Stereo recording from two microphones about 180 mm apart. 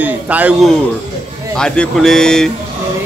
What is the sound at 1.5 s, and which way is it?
Speech, 5° left (ahead or behind).